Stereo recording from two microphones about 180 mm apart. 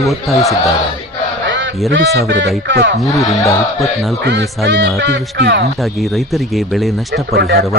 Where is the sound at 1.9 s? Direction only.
85° right.